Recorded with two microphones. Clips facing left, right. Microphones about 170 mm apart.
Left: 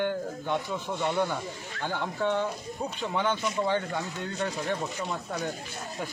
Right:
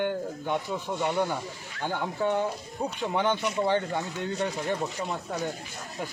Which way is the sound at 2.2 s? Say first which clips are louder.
Right 1 dB; 10° right (ahead or behind).